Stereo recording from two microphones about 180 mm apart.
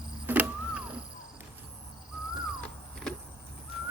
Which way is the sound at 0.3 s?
10° right (ahead or behind).